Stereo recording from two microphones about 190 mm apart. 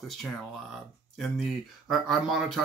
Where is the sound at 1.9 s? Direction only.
Centre (ahead or behind).